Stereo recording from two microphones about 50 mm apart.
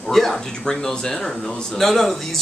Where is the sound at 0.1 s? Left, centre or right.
Centre.